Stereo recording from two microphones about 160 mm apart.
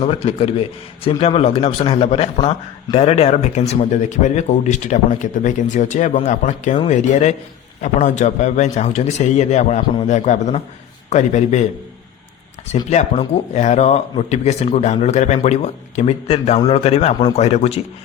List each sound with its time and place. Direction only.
0.0 s a man's voice: 35° left (ahead or behind)
12.6 s a man's voice: 45° left (ahead or behind)